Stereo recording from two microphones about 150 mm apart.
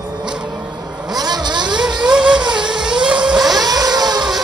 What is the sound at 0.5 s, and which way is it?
Vehicle, 30° right (ahead or behind).